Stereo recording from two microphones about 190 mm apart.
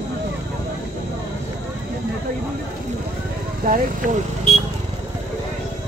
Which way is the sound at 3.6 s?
45° right (ahead or behind).